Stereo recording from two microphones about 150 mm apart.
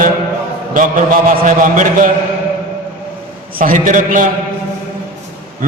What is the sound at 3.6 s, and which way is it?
Speech, 60° right (ahead or behind).